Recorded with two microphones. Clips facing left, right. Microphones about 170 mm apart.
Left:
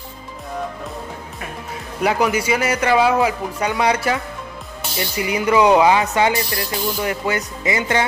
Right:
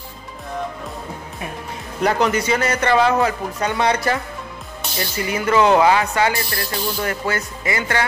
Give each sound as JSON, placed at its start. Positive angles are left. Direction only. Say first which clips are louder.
{"t": 2.0, "sound": "speech", "louder": "even", "side_deg": 10}